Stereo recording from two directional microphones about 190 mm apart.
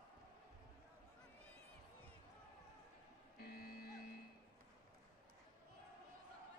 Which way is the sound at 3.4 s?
50° left (ahead or behind).